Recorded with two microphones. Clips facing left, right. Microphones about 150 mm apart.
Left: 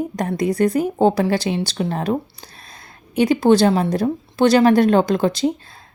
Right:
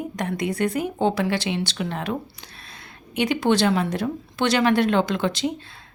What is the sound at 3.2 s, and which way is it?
Speech, 35° left (ahead or behind).